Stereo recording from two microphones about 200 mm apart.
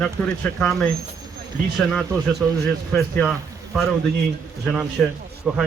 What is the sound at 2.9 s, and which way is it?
Speech, 5° left (ahead or behind).